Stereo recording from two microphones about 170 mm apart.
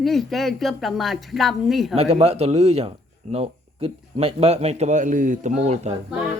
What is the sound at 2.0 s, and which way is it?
Speech, 40° right (ahead or behind).